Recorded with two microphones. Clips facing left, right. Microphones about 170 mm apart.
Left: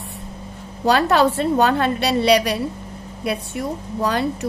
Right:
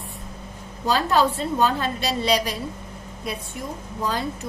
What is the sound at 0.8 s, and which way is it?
A woman's voice, 70° left (ahead or behind).